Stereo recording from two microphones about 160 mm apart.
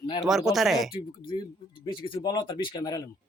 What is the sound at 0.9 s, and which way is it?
Speech, 30° left (ahead or behind).